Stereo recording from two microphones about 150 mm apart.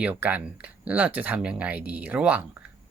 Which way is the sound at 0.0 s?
10° right (ahead or behind).